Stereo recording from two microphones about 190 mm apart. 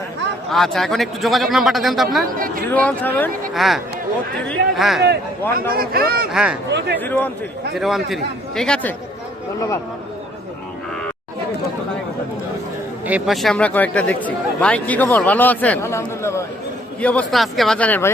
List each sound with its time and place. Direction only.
0.5 s speech: centre (ahead or behind)
2.2 s speech: 45° right (ahead or behind)
2.6 s speech: 10° left (ahead or behind)
3.5 s speech: centre (ahead or behind)
5.7 s speech: 50° right (ahead or behind)
6.3 s speech: 5° right (ahead or behind)
6.7 s speech: 65° right (ahead or behind)
7.0 s speech: 10° left (ahead or behind)
7.8 s speech: centre (ahead or behind)
13.1 s speech: 5° right (ahead or behind)